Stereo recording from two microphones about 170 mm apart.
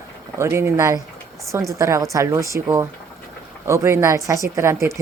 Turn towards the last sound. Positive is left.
turn(degrees=-15)  # may be behind; listen again after turning